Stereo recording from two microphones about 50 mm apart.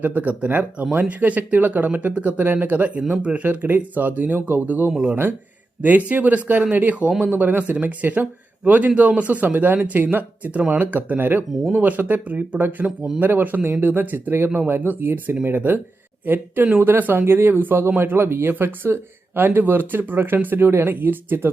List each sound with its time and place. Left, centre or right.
0.0 s speech: right
4.9 s speech: centre
6.1 s speech: right